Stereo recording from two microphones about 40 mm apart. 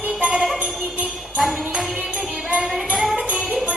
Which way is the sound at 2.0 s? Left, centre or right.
Right.